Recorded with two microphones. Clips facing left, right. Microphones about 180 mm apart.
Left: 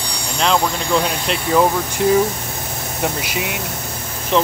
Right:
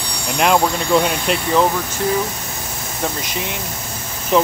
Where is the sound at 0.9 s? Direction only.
Centre (ahead or behind).